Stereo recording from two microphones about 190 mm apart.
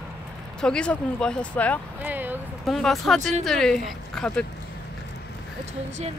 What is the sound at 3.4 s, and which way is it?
Speech, centre (ahead or behind).